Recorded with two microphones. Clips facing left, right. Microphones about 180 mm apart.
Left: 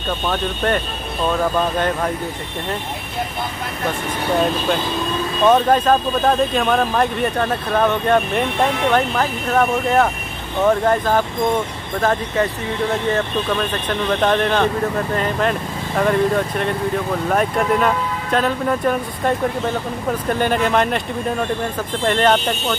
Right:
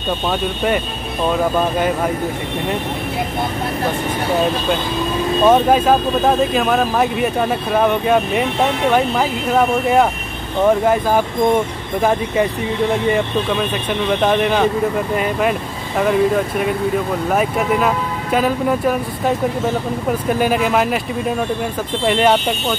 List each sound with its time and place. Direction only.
1.3 s speech: 10° right (ahead or behind)
5.4 s speech: 10° right (ahead or behind)